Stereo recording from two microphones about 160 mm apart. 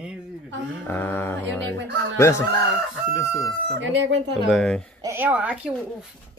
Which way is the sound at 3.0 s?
5° left (ahead or behind).